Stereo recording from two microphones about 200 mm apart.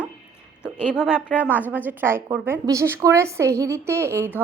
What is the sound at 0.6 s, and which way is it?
A woman's voice, 5° right (ahead or behind).